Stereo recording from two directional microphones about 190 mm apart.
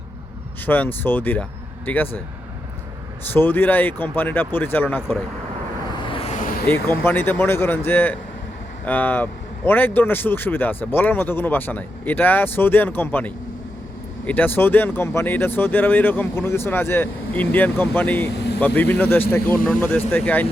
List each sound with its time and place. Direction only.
0.6 s speech: 10° left (ahead or behind)
3.3 s speech: 10° left (ahead or behind)
6.1 s vehicle: 30° left (ahead or behind)
6.7 s speech: 10° left (ahead or behind)